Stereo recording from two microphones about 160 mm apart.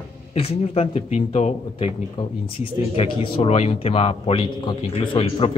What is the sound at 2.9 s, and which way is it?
A man's voice, 35° left (ahead or behind).